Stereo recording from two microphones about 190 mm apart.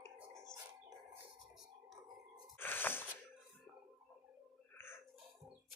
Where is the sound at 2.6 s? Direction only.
10° left (ahead or behind).